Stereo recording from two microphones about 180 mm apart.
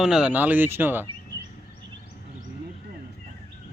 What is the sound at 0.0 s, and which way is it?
Speech, 5° right (ahead or behind).